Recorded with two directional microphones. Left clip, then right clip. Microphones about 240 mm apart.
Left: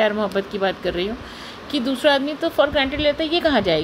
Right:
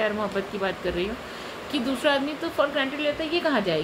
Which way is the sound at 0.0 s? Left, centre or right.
Left.